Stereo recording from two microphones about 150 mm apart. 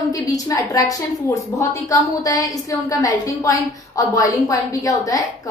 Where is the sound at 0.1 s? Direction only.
25° left (ahead or behind).